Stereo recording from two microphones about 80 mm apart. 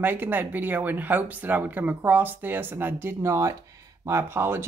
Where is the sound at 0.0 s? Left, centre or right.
Right.